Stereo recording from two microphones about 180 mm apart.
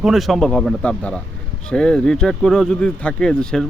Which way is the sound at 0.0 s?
Centre (ahead or behind).